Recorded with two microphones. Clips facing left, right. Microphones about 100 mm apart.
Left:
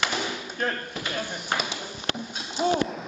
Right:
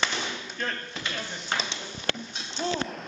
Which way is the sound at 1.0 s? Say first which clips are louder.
Left 3 dB; 15° left (ahead or behind).